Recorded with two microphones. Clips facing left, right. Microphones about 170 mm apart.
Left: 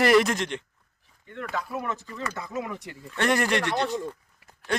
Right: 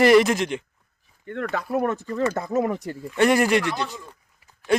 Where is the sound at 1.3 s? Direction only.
60° right (ahead or behind).